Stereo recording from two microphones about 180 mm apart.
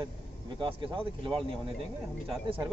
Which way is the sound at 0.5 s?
25° right (ahead or behind).